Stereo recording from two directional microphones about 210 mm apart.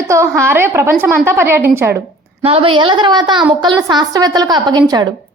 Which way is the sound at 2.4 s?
25° right (ahead or behind).